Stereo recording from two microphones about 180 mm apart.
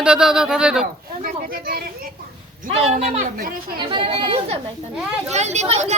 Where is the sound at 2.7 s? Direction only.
35° right (ahead or behind); by 3.8 s 55° right (ahead or behind).